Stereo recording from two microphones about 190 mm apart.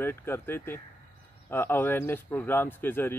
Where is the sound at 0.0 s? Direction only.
10° left (ahead or behind).